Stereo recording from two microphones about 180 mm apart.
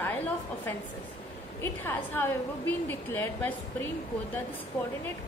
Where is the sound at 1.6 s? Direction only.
10° left (ahead or behind).